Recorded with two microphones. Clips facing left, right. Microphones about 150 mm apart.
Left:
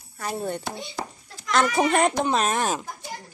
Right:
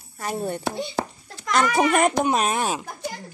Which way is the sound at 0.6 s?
65° right (ahead or behind).